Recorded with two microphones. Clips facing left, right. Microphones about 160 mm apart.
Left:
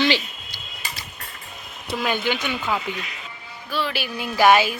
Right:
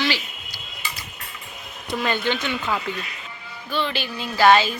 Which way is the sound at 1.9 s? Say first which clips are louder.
Even; 5° left (ahead or behind).